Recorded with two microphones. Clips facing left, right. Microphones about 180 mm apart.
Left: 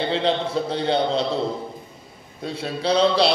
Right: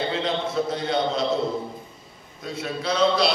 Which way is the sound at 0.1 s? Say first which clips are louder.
Left 4 dB; 30° left (ahead or behind).